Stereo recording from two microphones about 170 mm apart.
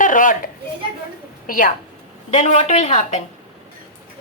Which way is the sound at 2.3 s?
45° left (ahead or behind).